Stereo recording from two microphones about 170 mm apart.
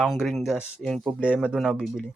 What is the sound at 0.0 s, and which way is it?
Speech, centre (ahead or behind).